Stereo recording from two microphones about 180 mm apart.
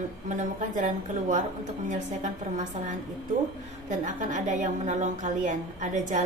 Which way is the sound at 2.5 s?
45° right (ahead or behind).